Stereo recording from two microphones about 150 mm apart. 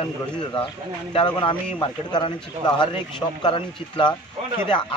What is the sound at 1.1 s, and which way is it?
Speech, 35° left (ahead or behind).